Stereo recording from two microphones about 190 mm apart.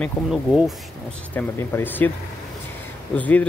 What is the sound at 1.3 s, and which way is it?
Speech, 10° left (ahead or behind).